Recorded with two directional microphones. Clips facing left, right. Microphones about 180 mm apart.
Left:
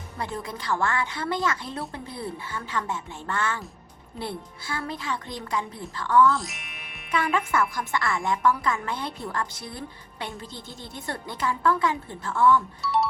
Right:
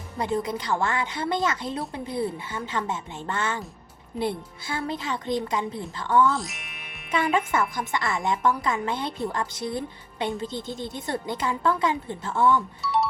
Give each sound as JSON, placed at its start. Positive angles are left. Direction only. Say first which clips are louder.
{"t": 0.2, "sound": "a woman's voice", "louder": "right 6 dB", "side_deg": -20}
{"t": 6.3, "sound": "music", "louder": "even", "side_deg": 0}
{"t": 7.1, "sound": "a woman's voice", "louder": "right 1 dB", "side_deg": -20}
{"t": 12.8, "sound": "music", "louder": "even", "side_deg": 0}